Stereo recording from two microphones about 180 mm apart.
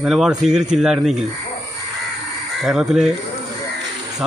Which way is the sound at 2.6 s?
Centre (ahead or behind).